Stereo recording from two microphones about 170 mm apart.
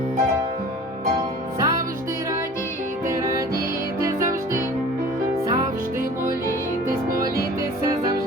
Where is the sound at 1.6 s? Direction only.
20° right (ahead or behind).